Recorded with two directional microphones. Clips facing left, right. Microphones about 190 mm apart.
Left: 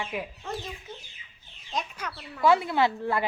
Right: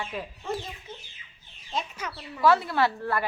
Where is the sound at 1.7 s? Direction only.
5° right (ahead or behind).